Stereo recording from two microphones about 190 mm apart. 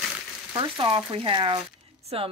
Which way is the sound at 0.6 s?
25° right (ahead or behind).